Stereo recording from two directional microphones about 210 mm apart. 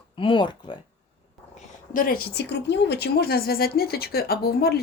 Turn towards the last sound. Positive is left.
turn(degrees=45)  # may be behind; listen again after turning